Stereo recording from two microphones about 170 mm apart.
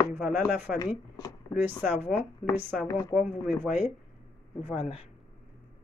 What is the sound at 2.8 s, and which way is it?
Speech, 15° left (ahead or behind).